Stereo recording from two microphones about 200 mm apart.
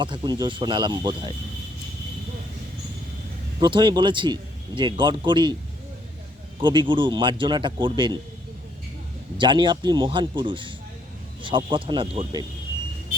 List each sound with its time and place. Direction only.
0.0 s speech: 25° right (ahead or behind)
3.6 s speech: 25° right (ahead or behind)
6.6 s speech: 25° right (ahead or behind)
9.4 s speech: 25° right (ahead or behind)